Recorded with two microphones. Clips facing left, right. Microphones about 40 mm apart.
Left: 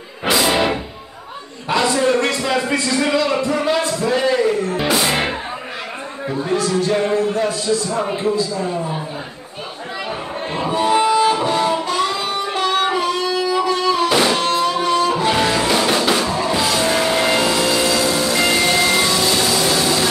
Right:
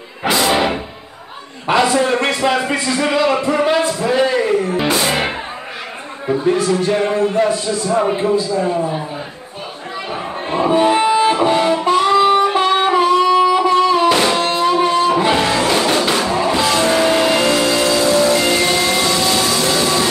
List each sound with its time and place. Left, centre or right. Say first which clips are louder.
0.3 s music: right 1 dB; centre
1.7 s speech: right 4 dB; right
2.0 s speech: right 1 dB; right
4.1 s a sound: right 2 dB; centre
6.5 s speech: left 2 dB; right
10.5 s music: right 4 dB; right
14.0 s music: right 3 dB; centre
14.3 s music: right 2 dB; right
15.3 s music: right 2 dB; centre
16.2 s music: right 3 dB; centre
19.1 s music: right 1 dB; centre